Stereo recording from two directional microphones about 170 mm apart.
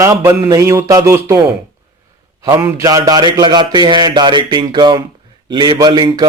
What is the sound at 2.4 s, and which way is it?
A man's voice, 15° right (ahead or behind).